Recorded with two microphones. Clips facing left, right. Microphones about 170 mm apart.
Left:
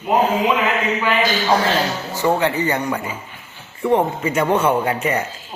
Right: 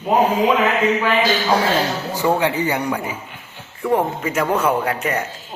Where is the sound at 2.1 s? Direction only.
10° right (ahead or behind).